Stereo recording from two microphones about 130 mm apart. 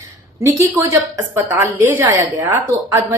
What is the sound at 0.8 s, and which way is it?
A woman's voice, 25° right (ahead or behind).